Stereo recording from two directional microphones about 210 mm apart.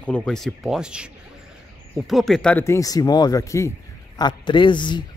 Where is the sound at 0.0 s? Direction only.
5° left (ahead or behind).